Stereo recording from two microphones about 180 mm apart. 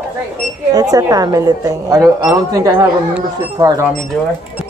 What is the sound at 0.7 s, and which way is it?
A woman's voice, 20° right (ahead or behind).